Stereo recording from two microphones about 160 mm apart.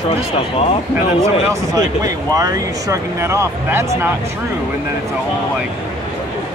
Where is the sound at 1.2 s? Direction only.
20° right (ahead or behind).